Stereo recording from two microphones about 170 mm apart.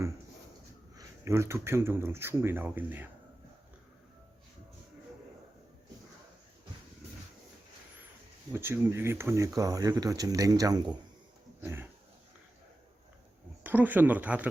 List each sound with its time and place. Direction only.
0.9 s speech: 15° right (ahead or behind)
8.5 s speech: 15° right (ahead or behind)
13.7 s speech: 10° right (ahead or behind)